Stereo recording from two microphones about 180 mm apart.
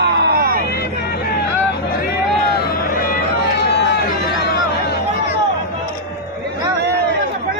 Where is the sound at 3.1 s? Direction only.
65° left (ahead or behind).